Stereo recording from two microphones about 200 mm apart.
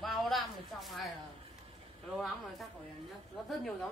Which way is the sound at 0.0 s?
Centre (ahead or behind).